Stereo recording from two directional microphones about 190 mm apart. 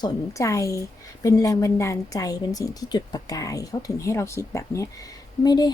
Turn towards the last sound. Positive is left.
turn(degrees=20)  # may be behind; listen again after turning